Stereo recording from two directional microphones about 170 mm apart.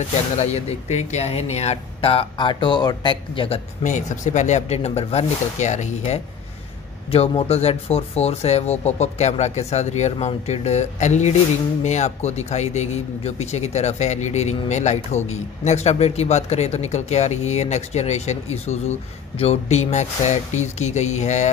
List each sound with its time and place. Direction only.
0.4 s speech: 40° left (ahead or behind)